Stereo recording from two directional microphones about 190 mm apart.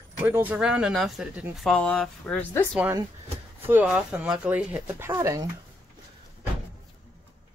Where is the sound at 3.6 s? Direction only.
10° right (ahead or behind).